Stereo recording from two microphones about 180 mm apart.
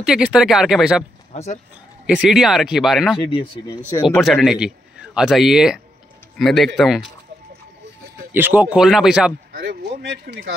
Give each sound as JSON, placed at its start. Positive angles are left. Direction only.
{"t": 0.0, "sound": "speech", "side_deg": -5}
{"t": 1.3, "sound": "speech", "side_deg": 35}
{"t": 2.0, "sound": "speech", "side_deg": -5}
{"t": 3.3, "sound": "speech", "side_deg": 30}
{"t": 4.1, "sound": "a man's voice", "side_deg": 0}
{"t": 8.3, "sound": "speech", "side_deg": -10}
{"t": 9.5, "sound": "speech", "side_deg": -55}